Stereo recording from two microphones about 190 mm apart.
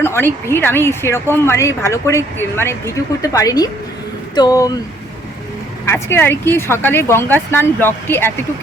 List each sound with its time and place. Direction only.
0.0 s a sound: 10° left (ahead or behind)
0.4 s speech: 10° left (ahead or behind)
5.8 s speech: 15° left (ahead or behind)